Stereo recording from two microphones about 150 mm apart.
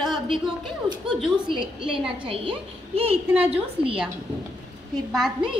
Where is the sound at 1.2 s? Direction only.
30° right (ahead or behind).